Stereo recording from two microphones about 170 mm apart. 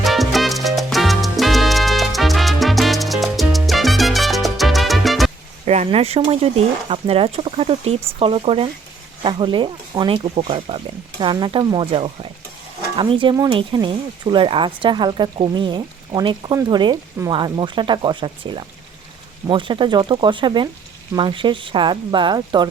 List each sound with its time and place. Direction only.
0.0 s salsa music: centre (ahead or behind)
5.6 s speech: 40° right (ahead or behind)